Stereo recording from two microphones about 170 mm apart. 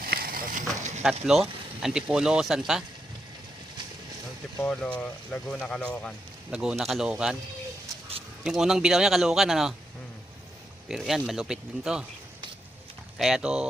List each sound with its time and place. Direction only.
0.0 s a sound: 60° right (ahead or behind); by 1.0 s 45° right (ahead or behind)
1.3 s speech: centre (ahead or behind)
4.6 s a man's voice: 5° left (ahead or behind)
6.5 s speech: 5° right (ahead or behind)
8.4 s speech: 5° right (ahead or behind)
10.8 s speech: centre (ahead or behind)
13.1 s speech: centre (ahead or behind)